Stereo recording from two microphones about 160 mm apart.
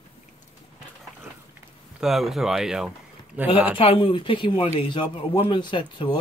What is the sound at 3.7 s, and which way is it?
Speech, 35° left (ahead or behind).